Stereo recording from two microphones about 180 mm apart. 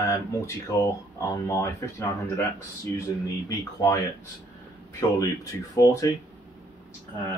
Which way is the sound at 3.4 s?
20° left (ahead or behind).